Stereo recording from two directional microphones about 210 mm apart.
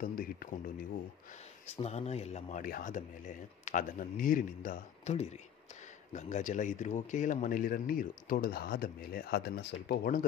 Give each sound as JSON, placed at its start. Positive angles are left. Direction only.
{"t": 0.0, "sound": "speech", "side_deg": 45}
{"t": 1.7, "sound": "speech", "side_deg": 30}